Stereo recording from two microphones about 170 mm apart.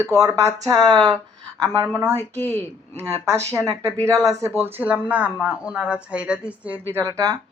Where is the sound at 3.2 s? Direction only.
15° right (ahead or behind).